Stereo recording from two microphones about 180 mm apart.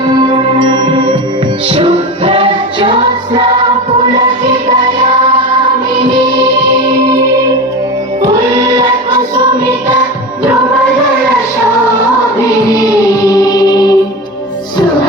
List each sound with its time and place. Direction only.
0.2 s music: 25° right (ahead or behind)
8.2 s music: 20° right (ahead or behind)
13.3 s music: 20° left (ahead or behind)